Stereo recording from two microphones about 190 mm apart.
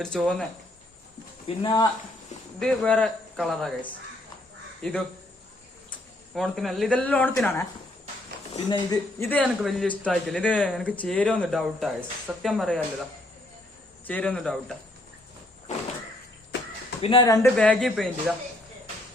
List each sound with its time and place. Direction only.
0.0 s a man's voice: 5° left (ahead or behind)
1.5 s speech: 25° left (ahead or behind)
2.6 s a man's voice: 5° left (ahead or behind)
8.7 s speech: 20° left (ahead or behind)
9.3 s a man's voice: 5° left (ahead or behind)
14.1 s a man's voice: 5° left (ahead or behind)
17.0 s speech: 25° left (ahead or behind)
17.6 s a man's voice: 5° left (ahead or behind)